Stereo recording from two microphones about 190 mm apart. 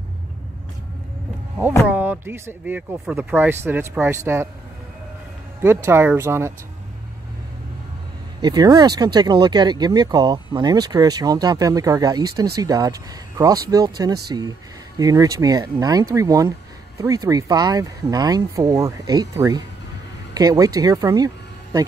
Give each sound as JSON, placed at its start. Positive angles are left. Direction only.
{"t": 1.9, "sound": "speech", "side_deg": -10}
{"t": 5.6, "sound": "speech", "side_deg": -15}
{"t": 8.4, "sound": "speech", "side_deg": -20}